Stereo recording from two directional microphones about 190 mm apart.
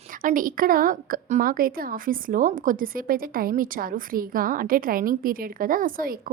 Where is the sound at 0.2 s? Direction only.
45° right (ahead or behind).